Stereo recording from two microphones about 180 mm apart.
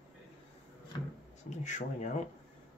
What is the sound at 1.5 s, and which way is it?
Speech, 40° left (ahead or behind).